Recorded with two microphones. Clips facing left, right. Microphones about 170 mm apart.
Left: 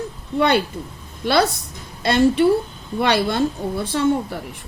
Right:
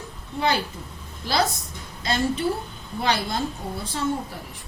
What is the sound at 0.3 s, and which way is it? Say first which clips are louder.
A woman's voice: left 7 dB; 65° left (ahead or behind).